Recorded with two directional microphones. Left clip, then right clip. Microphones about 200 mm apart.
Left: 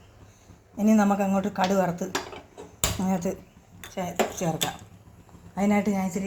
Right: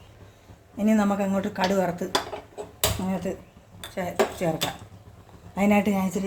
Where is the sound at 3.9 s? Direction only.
5° right (ahead or behind).